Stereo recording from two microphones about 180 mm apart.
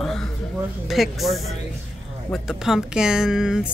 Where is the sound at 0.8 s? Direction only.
Centre (ahead or behind).